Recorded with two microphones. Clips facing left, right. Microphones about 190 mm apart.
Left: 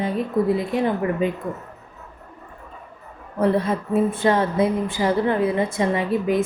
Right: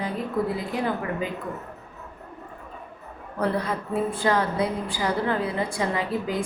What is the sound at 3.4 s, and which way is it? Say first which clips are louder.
A woman's voice: left 6 dB; 25° left (ahead or behind).